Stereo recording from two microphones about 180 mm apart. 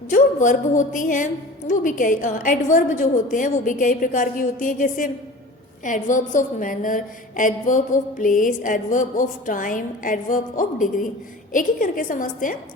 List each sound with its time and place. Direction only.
0.1 s a woman's voice: 45° left (ahead or behind)